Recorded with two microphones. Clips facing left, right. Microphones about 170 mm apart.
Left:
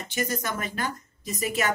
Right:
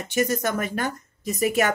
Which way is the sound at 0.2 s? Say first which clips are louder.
Right 6 dB; 65° right (ahead or behind).